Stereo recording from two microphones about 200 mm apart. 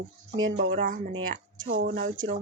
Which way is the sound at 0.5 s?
70° right (ahead or behind).